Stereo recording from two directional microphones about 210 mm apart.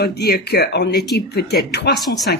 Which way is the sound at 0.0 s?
50° left (ahead or behind).